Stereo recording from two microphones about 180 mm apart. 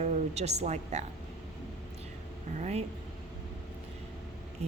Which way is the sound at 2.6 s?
35° right (ahead or behind).